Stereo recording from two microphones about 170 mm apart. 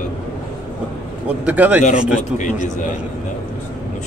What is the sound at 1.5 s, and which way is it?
Speech, 10° right (ahead or behind).